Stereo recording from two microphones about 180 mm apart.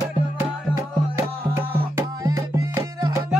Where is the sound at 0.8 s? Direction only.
15° right (ahead or behind).